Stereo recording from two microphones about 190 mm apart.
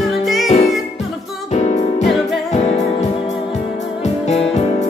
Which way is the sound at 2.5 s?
35° left (ahead or behind).